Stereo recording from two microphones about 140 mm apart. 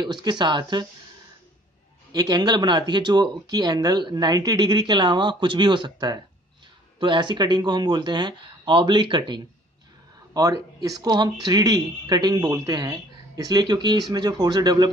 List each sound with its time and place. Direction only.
0.0 s speech: 30° right (ahead or behind)
2.1 s speech: 30° right (ahead or behind)